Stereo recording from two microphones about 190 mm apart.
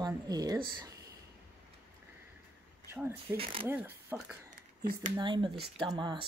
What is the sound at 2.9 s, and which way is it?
Speech, 10° right (ahead or behind).